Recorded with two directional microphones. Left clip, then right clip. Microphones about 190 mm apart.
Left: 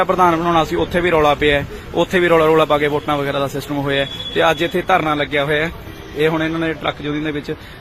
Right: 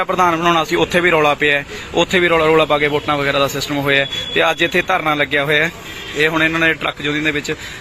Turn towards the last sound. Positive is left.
turn(degrees=5)  # may be behind; listen again after turning